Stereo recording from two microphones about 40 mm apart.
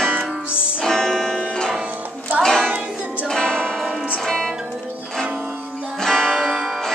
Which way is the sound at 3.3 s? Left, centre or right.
Centre.